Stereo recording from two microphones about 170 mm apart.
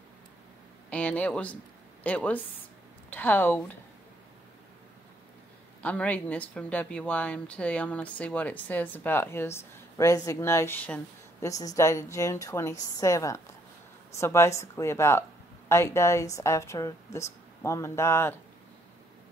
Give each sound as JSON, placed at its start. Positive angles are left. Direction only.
{"t": 0.8, "sound": "speech", "side_deg": 10}
{"t": 5.8, "sound": "a woman's voice", "side_deg": 10}